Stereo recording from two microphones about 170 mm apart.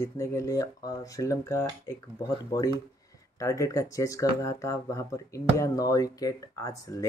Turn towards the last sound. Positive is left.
turn(degrees=20)  # may be behind; listen again after turning